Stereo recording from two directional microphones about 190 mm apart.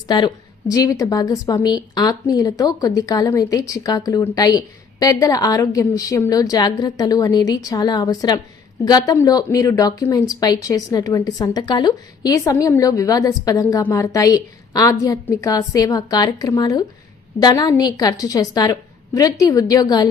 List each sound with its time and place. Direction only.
0.1 s a woman's voice: 20° left (ahead or behind)